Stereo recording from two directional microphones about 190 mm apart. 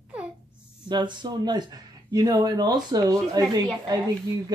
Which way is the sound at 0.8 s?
25° right (ahead or behind).